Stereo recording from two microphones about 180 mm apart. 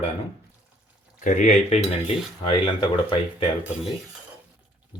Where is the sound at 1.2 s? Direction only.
45° left (ahead or behind).